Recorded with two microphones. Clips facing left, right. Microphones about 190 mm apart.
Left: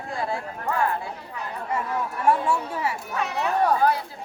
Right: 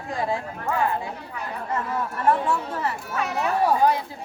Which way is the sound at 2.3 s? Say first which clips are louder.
Even; 10° left (ahead or behind).